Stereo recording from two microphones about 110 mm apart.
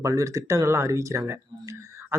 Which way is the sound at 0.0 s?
30° right (ahead or behind).